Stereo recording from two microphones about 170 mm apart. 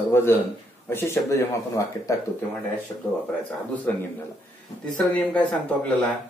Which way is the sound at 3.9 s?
10° left (ahead or behind).